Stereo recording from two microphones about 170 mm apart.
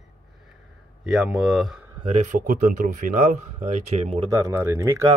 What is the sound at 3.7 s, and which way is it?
Speech, 40° right (ahead or behind).